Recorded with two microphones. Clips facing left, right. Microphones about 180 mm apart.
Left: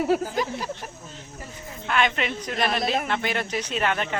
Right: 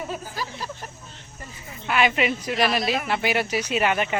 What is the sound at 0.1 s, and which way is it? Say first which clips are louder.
Speech: left 10 dB; 80° left.